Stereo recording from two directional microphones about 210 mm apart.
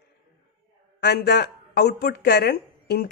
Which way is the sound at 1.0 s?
50° left (ahead or behind).